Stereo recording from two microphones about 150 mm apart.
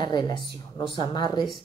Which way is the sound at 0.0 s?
30° left (ahead or behind).